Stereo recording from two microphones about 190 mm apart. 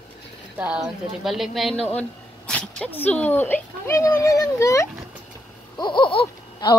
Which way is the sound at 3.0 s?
10° left (ahead or behind).